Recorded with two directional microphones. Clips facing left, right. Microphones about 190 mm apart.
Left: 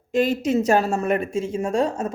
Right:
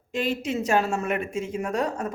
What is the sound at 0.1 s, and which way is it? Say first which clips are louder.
Speech: left 7 dB; 40° left (ahead or behind).